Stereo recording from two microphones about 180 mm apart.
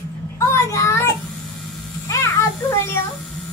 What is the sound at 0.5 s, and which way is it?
Child singing, 15° left (ahead or behind).